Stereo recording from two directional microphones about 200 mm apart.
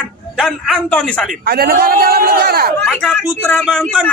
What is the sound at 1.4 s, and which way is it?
A man's voice, 50° right (ahead or behind).